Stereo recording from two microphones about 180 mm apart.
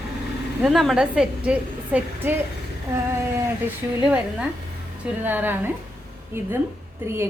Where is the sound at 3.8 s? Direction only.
15° right (ahead or behind).